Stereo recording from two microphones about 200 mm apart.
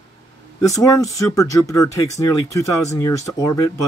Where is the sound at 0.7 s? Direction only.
15° left (ahead or behind).